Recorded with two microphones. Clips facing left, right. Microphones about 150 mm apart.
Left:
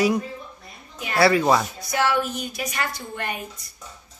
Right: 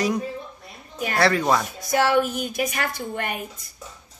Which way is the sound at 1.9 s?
50° right (ahead or behind).